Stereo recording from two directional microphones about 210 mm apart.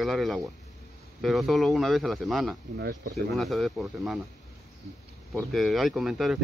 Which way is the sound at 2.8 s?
55° right (ahead or behind).